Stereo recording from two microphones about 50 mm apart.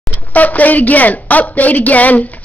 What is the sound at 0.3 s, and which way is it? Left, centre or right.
A woman's voice, left.